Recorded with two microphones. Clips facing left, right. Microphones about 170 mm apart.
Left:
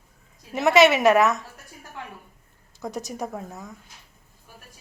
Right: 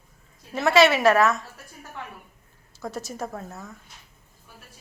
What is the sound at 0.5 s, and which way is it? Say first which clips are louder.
Speech: left 1 dB; 20° left (ahead or behind).